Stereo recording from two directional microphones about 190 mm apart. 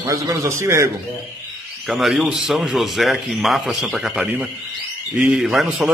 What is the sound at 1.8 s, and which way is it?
Speech, centre (ahead or behind).